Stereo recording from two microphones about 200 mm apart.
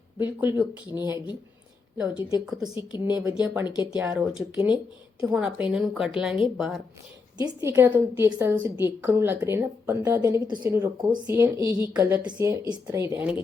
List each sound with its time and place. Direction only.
0.2 s speech: 10° right (ahead or behind)
2.6 s speech: 15° right (ahead or behind)
7.3 s speech: 15° right (ahead or behind)
10.5 s speech: 10° right (ahead or behind)